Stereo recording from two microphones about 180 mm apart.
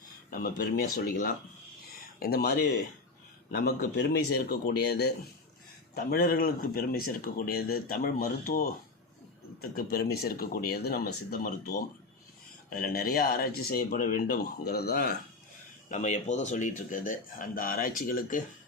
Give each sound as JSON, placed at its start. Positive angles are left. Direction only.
{"t": 0.3, "sound": "speech", "side_deg": 50}
{"t": 15.9, "sound": "speech", "side_deg": 40}